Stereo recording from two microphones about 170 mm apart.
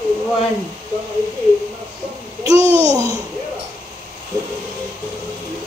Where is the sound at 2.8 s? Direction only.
10° left (ahead or behind).